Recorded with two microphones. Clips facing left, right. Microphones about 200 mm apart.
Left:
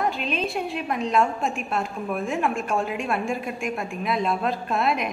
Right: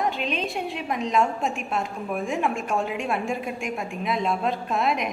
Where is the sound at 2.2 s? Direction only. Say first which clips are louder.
Even; centre (ahead or behind).